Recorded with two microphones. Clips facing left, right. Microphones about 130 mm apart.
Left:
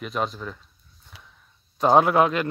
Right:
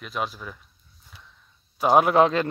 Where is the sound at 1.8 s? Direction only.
10° right (ahead or behind).